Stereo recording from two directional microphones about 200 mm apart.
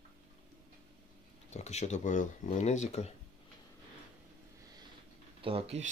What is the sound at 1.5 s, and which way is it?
Speech, 35° left (ahead or behind).